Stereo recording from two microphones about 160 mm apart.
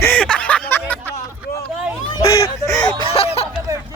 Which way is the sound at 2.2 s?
20° left (ahead or behind).